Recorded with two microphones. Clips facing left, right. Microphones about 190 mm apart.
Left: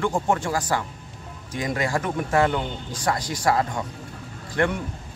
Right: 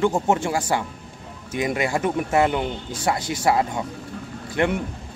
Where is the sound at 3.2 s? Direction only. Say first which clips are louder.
Right 3 dB; 25° right (ahead or behind).